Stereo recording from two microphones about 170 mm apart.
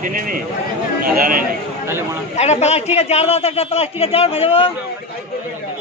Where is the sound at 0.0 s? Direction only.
55° right (ahead or behind).